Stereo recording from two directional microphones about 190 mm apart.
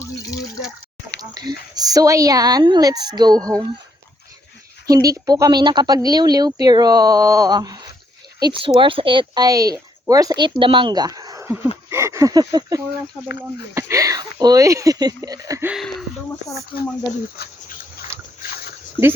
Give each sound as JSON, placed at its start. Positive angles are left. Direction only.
{"t": 1.2, "sound": "a sound", "side_deg": -20}
{"t": 1.7, "sound": "speech", "side_deg": -20}
{"t": 4.9, "sound": "speech", "side_deg": -20}
{"t": 15.7, "sound": "speech", "side_deg": 0}
{"t": 17.3, "sound": "a sound", "side_deg": 55}
{"t": 18.4, "sound": "dog", "side_deg": 55}
{"t": 19.0, "sound": "speech", "side_deg": -10}